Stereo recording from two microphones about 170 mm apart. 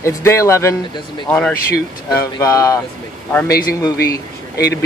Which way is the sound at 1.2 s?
5° left (ahead or behind).